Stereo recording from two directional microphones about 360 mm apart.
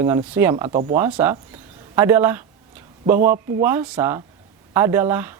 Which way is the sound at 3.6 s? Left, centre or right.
Centre.